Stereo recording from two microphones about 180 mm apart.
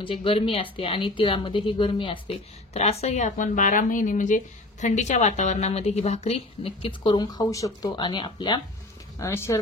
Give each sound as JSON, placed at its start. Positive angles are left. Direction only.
{"t": 0.0, "sound": "speech", "side_deg": 30}